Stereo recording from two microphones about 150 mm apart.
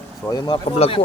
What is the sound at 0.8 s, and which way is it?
Speech, 40° left (ahead or behind).